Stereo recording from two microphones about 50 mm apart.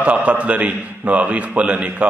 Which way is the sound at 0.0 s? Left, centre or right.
Right.